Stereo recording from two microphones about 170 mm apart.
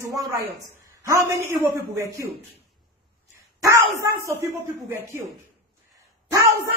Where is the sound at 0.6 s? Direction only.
20° right (ahead or behind).